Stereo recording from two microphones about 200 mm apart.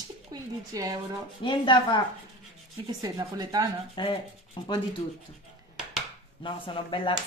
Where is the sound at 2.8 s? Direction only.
20° right (ahead or behind).